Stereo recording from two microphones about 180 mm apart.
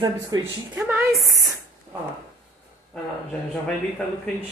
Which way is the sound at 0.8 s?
10° right (ahead or behind).